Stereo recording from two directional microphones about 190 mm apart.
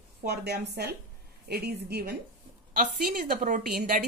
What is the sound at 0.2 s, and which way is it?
A woman's voice, 60° right (ahead or behind).